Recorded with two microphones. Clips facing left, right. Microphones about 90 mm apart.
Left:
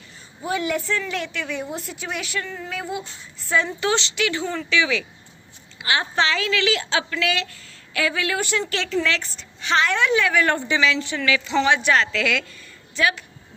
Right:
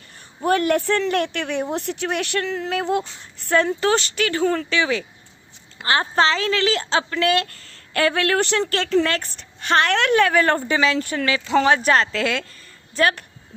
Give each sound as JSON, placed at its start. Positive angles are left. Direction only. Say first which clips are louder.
{"t": 0.4, "sound": "a woman's voice", "louder": "right 6 dB", "side_deg": -55}
{"t": 3.8, "sound": "a woman's voice", "louder": "right 3 dB", "side_deg": -45}
{"t": 8.7, "sound": "a woman's voice", "louder": "right 4 dB", "side_deg": -50}